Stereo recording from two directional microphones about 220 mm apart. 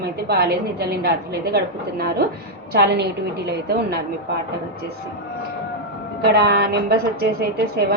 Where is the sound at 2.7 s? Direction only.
50° right (ahead or behind).